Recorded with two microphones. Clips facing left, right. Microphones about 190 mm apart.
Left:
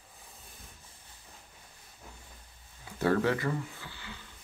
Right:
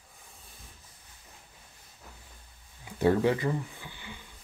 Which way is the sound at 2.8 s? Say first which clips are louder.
Right 3 dB; 15° right (ahead or behind).